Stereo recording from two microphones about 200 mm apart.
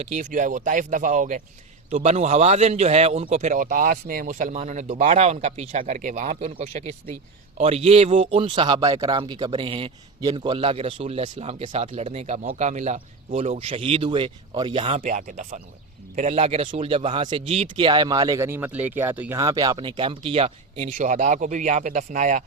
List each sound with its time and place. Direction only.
0.0 s speech: 35° right (ahead or behind)
15.0 s speech: 40° right (ahead or behind)